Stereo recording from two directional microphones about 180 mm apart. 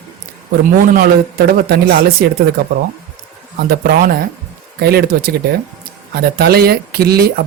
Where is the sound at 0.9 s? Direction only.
60° right (ahead or behind).